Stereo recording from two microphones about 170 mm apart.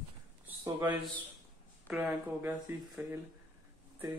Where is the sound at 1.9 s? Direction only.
10° right (ahead or behind).